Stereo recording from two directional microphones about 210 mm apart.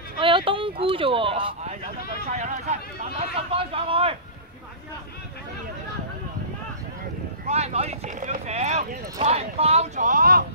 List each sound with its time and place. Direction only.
0.2 s speech: 25° right (ahead or behind)
7.4 s speech: 30° right (ahead or behind)